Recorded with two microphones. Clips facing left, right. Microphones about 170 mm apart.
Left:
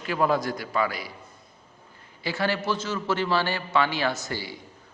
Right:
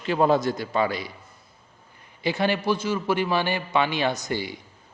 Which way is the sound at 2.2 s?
20° right (ahead or behind).